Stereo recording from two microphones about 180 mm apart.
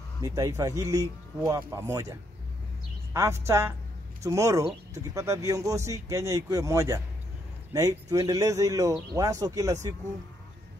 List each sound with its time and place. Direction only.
0.2 s speech: 20° right (ahead or behind)